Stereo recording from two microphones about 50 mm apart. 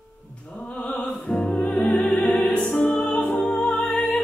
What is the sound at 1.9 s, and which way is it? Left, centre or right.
Opera, left.